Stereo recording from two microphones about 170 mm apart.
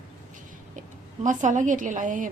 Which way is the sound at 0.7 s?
50° right (ahead or behind).